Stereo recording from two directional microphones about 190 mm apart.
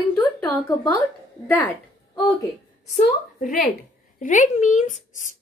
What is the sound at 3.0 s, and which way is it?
A woman's voice, 45° left (ahead or behind).